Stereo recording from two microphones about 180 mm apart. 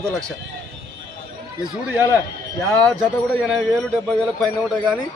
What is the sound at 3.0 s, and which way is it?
A man's voice, centre (ahead or behind).